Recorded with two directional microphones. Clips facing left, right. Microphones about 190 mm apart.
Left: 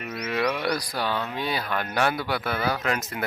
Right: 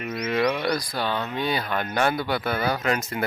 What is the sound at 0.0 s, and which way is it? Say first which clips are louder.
Speech: right 3 dB; centre (ahead or behind).